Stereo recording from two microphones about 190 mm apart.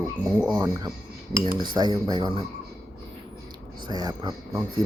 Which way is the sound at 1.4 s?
25° right (ahead or behind).